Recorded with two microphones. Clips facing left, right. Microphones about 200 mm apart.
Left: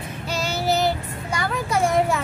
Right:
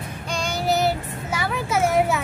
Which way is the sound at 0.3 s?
5° left (ahead or behind).